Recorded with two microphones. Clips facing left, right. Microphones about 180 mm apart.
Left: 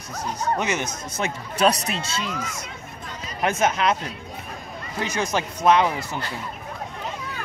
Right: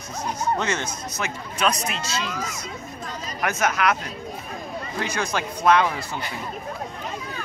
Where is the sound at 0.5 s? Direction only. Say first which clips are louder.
Left 1 dB; 15° left (ahead or behind).